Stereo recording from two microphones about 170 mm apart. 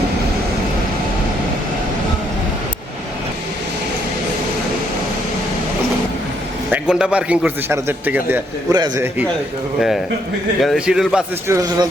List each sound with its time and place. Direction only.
6.7 s a man's voice: 5° right (ahead or behind)
8.7 s speech: 25° right (ahead or behind)
10.6 s a man's voice: 5° right (ahead or behind)
11.4 s speech: 20° right (ahead or behind)